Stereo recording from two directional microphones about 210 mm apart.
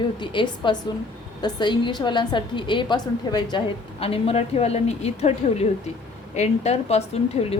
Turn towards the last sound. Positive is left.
turn(degrees=30)  # may be behind; listen again after turning